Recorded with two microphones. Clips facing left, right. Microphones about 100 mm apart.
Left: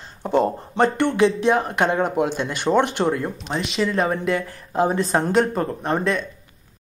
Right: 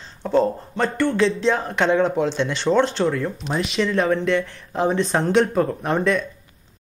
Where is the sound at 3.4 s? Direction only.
Centre (ahead or behind).